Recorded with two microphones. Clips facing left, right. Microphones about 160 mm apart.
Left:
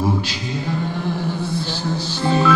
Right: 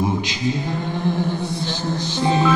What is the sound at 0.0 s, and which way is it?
Mantra, 15° right (ahead or behind).